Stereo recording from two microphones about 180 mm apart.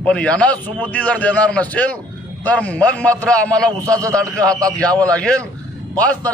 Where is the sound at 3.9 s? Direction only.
20° right (ahead or behind).